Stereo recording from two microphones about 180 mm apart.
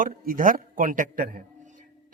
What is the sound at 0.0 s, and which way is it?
A man's voice, 50° right (ahead or behind).